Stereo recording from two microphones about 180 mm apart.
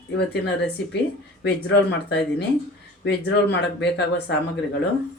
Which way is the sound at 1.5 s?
65° left (ahead or behind).